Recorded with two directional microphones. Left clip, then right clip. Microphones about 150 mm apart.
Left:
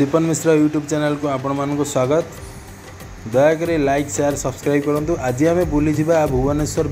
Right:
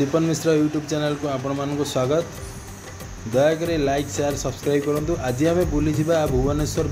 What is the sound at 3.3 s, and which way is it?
Speech, 5° left (ahead or behind).